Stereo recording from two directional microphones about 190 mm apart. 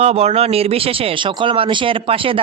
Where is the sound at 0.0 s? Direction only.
35° right (ahead or behind).